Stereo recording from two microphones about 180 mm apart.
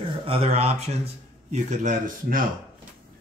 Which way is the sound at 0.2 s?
35° right (ahead or behind).